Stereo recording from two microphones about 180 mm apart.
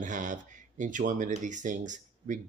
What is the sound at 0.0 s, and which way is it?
Speech, 45° right (ahead or behind).